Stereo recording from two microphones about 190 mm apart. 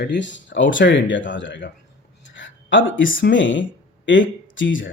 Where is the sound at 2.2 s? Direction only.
70° left (ahead or behind).